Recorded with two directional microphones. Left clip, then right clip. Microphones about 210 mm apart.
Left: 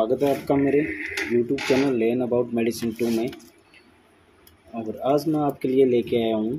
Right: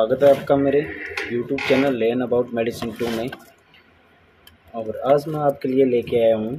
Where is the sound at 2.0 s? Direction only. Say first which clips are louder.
Right 2 dB; 45° left (ahead or behind).